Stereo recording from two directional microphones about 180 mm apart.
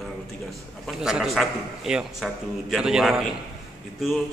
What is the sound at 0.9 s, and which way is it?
A man's voice, 5° right (ahead or behind).